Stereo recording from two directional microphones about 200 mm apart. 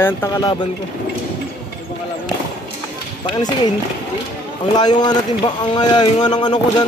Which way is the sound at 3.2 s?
20° left (ahead or behind).